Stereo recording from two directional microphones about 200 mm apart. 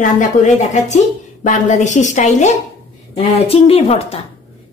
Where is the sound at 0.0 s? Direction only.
40° left (ahead or behind).